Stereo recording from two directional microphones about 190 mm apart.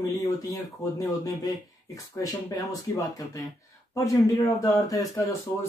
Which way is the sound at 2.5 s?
20° left (ahead or behind).